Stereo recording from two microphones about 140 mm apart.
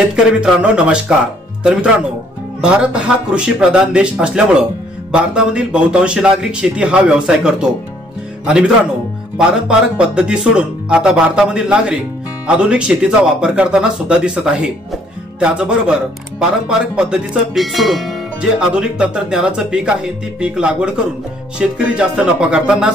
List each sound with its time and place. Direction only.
0.0 s a man's voice: 5° right (ahead or behind)